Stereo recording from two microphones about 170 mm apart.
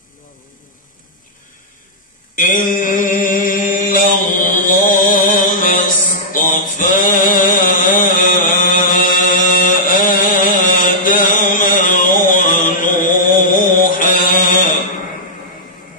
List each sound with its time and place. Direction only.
2.3 s mantra: 50° left (ahead or behind)